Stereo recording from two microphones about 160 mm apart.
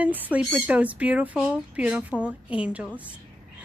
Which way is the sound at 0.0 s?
10° right (ahead or behind).